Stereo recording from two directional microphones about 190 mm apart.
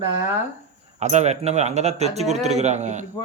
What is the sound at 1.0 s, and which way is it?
Speech, 35° right (ahead or behind).